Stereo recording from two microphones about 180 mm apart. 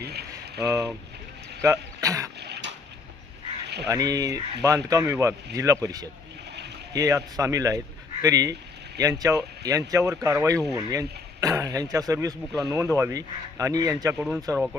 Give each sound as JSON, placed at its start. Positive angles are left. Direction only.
{"t": 0.0, "sound": "a sound", "side_deg": -65}
{"t": 0.7, "sound": "speech", "side_deg": -15}
{"t": 2.4, "sound": "dog", "side_deg": -70}
{"t": 3.8, "sound": "speech", "side_deg": -20}
{"t": 14.2, "sound": "speech", "side_deg": -5}